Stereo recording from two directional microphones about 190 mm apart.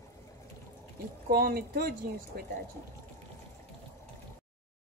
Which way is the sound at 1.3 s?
50° right (ahead or behind).